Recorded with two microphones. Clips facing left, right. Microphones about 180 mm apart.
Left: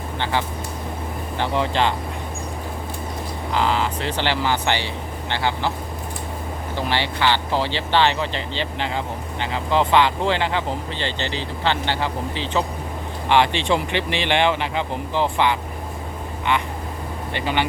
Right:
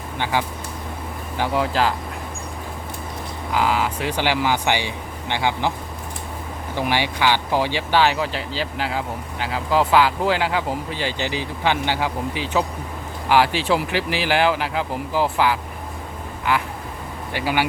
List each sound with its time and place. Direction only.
0.2 s speech: 10° right (ahead or behind)
3.5 s speech: 10° right (ahead or behind)
6.7 s speech: 15° right (ahead or behind)